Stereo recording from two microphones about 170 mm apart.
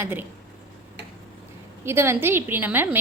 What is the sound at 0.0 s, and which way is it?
Speech, 10° right (ahead or behind).